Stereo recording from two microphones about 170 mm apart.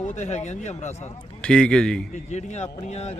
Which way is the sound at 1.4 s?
5° left (ahead or behind).